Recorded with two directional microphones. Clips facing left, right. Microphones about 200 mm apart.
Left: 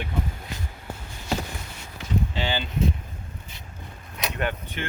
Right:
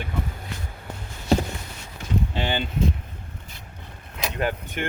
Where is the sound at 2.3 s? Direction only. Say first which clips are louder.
Right 2 dB; 55° right (ahead or behind).